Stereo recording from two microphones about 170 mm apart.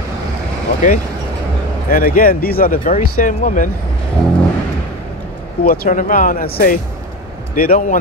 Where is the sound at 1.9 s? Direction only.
55° left (ahead or behind).